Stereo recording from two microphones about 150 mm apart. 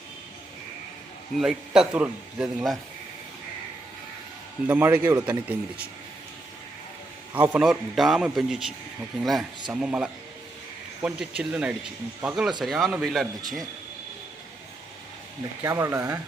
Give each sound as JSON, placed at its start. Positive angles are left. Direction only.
{"t": 1.4, "sound": "speech", "side_deg": -5}
{"t": 4.6, "sound": "speech", "side_deg": -10}
{"t": 7.3, "sound": "speech", "side_deg": -15}
{"t": 7.6, "sound": "speech", "side_deg": 0}
{"t": 15.6, "sound": "speech", "side_deg": -15}